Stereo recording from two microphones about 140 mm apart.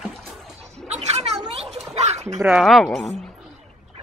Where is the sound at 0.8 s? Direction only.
50° right (ahead or behind).